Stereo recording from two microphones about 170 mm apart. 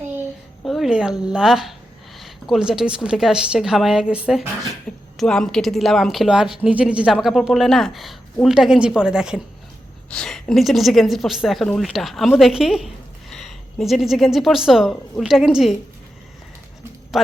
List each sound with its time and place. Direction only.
0.6 s a woman's voice: centre (ahead or behind)